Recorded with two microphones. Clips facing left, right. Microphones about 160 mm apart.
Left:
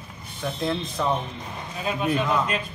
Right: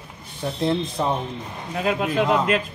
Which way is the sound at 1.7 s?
90° right.